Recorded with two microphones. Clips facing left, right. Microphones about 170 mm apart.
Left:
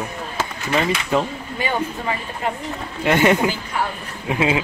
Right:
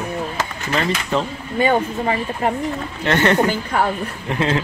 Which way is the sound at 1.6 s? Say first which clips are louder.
Right 7 dB; 40° right (ahead or behind).